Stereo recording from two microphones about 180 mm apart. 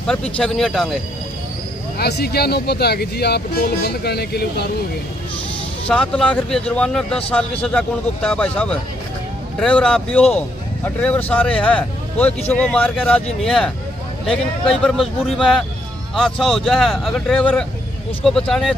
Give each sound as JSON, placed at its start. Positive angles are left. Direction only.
{"t": 0.0, "sound": "speech", "side_deg": 5}
{"t": 2.0, "sound": "speech", "side_deg": 65}
{"t": 5.9, "sound": "speech", "side_deg": 5}